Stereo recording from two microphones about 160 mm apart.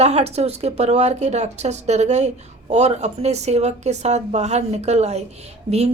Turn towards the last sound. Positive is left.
turn(degrees=-40)  # may be behind; listen again after turning